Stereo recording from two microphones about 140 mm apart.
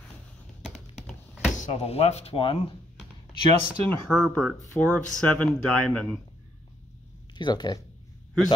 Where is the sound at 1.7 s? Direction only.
45° left (ahead or behind).